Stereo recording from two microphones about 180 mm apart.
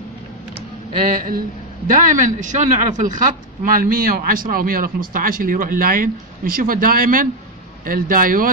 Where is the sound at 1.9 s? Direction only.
45° right (ahead or behind).